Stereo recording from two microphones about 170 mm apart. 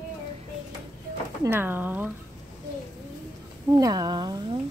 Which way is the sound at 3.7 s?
20° right (ahead or behind).